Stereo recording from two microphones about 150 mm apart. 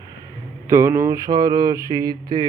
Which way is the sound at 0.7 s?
20° right (ahead or behind).